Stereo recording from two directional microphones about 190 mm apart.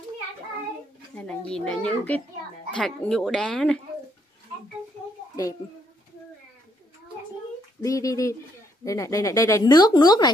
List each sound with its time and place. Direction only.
1.1 s a child's voice: 5° left (ahead or behind)
7.8 s speech: 15° left (ahead or behind)